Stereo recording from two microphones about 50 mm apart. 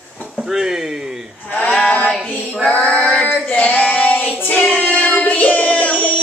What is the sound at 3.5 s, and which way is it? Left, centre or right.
Child singing, left.